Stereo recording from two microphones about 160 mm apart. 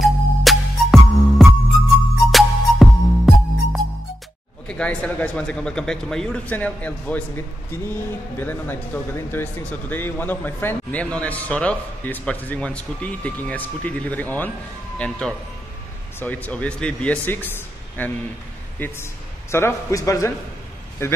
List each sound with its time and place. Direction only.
0.0 s music: centre (ahead or behind)
4.6 s a man's voice: 5° left (ahead or behind)